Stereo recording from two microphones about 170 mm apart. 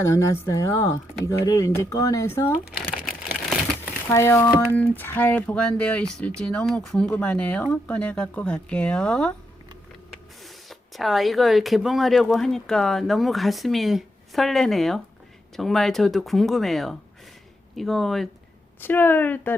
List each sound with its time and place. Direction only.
0.0 s speech: 20° left (ahead or behind)
4.1 s speech: 15° left (ahead or behind)
10.4 s speech: centre (ahead or behind)
18.8 s speech: 10° left (ahead or behind)